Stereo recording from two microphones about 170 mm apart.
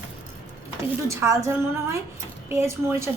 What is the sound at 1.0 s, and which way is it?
A woman's voice, 15° right (ahead or behind).